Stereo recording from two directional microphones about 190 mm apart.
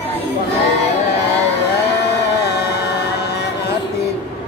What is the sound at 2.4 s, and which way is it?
Music, 60° left (ahead or behind).